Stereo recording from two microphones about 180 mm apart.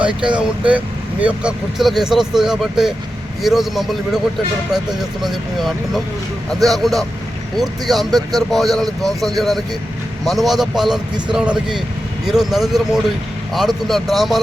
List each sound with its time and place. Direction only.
0.0 s speech: 25° right (ahead or behind)
0.3 s speech: 5° right (ahead or behind)
5.2 s speech: centre (ahead or behind)